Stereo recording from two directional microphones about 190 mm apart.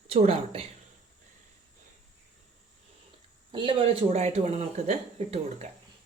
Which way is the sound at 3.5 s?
25° right (ahead or behind).